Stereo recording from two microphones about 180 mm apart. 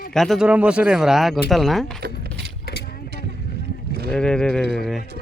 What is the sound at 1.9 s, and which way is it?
Speech, 60° right (ahead or behind).